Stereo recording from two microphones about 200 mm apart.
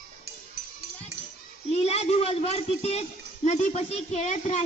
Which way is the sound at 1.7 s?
30° left (ahead or behind).